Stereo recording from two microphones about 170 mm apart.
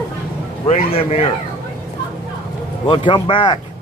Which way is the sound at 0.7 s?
35° left (ahead or behind).